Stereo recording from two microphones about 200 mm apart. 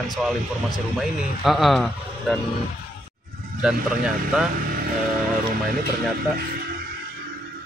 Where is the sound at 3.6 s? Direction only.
5° right (ahead or behind).